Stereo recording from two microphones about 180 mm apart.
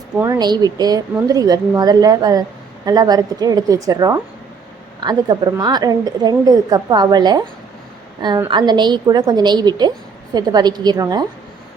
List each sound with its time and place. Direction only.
0.2 s a woman's voice: 20° right (ahead or behind)
8.4 s a woman's voice: 25° right (ahead or behind)